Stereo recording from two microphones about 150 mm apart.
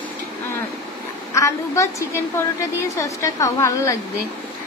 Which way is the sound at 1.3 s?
20° left (ahead or behind).